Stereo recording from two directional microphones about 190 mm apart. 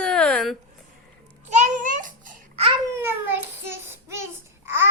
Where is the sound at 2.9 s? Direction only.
10° right (ahead or behind).